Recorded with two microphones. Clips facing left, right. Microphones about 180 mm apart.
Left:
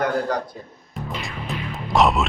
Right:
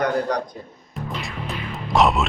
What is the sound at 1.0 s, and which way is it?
Music, centre (ahead or behind).